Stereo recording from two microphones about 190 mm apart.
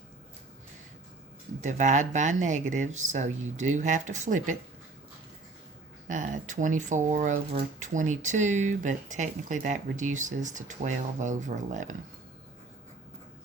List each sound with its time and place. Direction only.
1.6 s speech: 40° right (ahead or behind)
6.1 s speech: 40° right (ahead or behind)